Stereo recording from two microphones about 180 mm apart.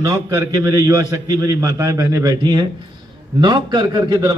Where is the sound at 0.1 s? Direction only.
20° right (ahead or behind).